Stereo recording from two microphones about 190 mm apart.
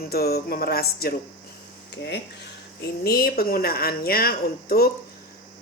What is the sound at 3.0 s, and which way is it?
A woman's voice, 55° left (ahead or behind).